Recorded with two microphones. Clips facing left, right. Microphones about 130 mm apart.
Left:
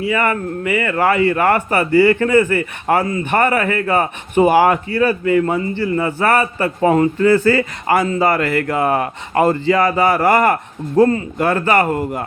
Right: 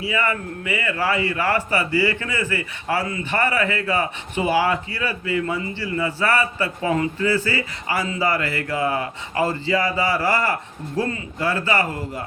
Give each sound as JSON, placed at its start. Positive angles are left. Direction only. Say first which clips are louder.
{"t": 0.0, "sound": "a man's voice", "louder": "left 6 dB", "side_deg": 55}